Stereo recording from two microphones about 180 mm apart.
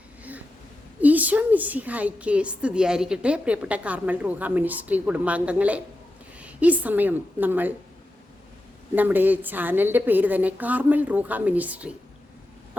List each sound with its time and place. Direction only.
1.0 s a woman's voice: 10° right (ahead or behind)
9.0 s a woman's voice: 10° right (ahead or behind)